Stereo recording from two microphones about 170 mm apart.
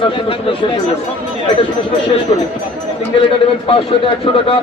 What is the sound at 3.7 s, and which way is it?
Speech, 30° left (ahead or behind).